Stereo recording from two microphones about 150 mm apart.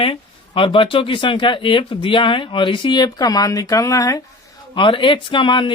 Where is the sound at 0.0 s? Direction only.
35° left (ahead or behind).